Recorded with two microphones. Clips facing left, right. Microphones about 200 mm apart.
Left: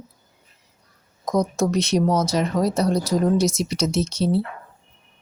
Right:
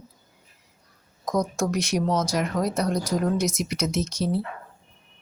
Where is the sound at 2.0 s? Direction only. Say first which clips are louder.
Left 4 dB; 5° left (ahead or behind).